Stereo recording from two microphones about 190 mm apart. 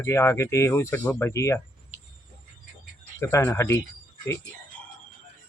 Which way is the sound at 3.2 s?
15° left (ahead or behind).